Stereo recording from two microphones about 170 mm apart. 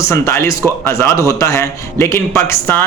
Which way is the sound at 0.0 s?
15° left (ahead or behind).